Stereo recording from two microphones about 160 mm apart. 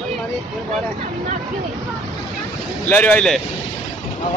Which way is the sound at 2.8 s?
10° left (ahead or behind).